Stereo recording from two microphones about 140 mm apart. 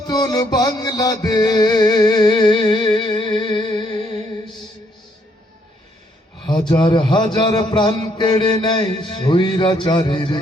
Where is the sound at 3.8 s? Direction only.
55° right (ahead or behind).